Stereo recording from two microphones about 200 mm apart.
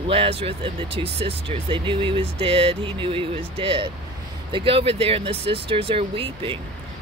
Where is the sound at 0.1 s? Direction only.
30° right (ahead or behind).